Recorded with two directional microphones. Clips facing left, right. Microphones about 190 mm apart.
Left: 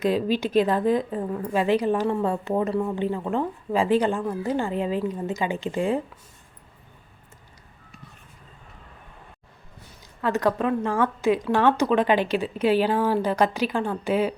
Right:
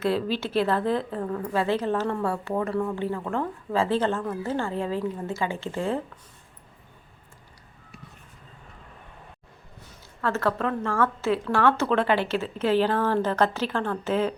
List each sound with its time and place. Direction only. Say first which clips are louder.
0.0 s a woman's voice: left 3 dB; 15° left (ahead or behind)
10.2 s a woman's voice: left 3 dB; 15° left (ahead or behind)